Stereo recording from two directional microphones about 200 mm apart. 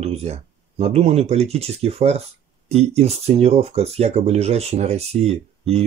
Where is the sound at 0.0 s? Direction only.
30° right (ahead or behind).